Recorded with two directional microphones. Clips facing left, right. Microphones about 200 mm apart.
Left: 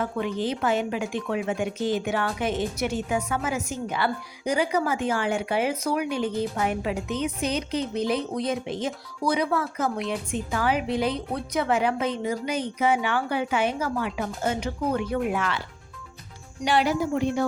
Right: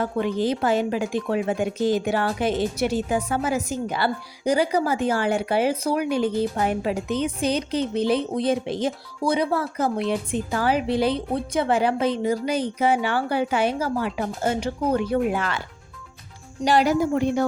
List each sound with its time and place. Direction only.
0.0 s speech: 35° right (ahead or behind)
16.6 s speech: 40° right (ahead or behind)